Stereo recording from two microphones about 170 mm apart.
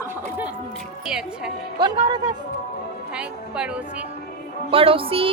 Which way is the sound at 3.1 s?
5° right (ahead or behind).